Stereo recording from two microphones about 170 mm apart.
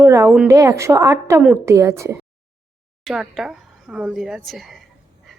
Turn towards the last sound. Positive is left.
turn(degrees=0)  # may be behind; listen again after turning